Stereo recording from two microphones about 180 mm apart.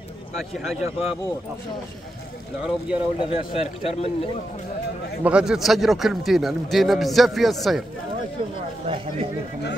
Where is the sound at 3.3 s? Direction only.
35° left (ahead or behind).